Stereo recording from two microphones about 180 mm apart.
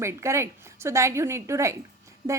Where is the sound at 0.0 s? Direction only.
15° right (ahead or behind).